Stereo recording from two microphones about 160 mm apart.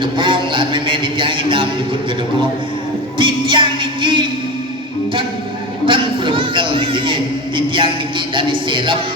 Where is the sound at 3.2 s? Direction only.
30° right (ahead or behind).